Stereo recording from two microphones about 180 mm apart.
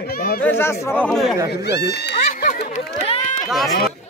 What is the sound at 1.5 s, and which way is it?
Speech, 65° left (ahead or behind).